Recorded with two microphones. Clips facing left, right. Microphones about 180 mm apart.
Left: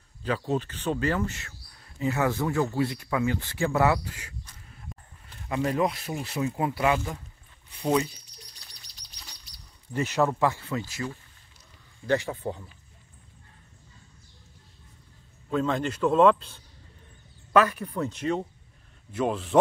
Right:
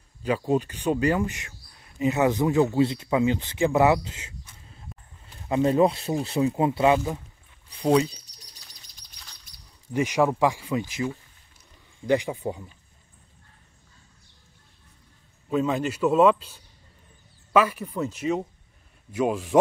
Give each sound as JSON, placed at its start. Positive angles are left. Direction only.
{"t": 0.2, "sound": "speech", "side_deg": -10}
{"t": 5.5, "sound": "speech", "side_deg": -25}
{"t": 9.9, "sound": "speech", "side_deg": -15}
{"t": 15.5, "sound": "speech", "side_deg": -10}